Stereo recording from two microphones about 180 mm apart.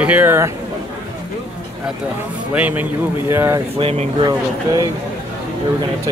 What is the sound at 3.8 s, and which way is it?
Speech, 35° right (ahead or behind).